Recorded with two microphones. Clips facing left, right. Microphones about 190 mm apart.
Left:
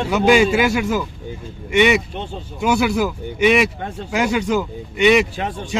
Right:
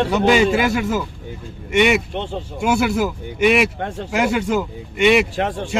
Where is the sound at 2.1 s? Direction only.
80° right.